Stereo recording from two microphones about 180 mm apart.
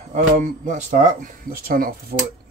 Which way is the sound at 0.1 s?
40° right (ahead or behind).